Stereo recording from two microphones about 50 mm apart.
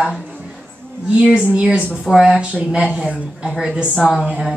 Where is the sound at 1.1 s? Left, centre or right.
Centre.